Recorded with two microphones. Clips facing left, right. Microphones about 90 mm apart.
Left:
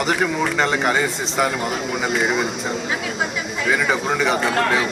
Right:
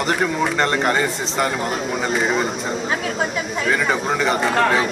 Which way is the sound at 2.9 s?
40° right (ahead or behind).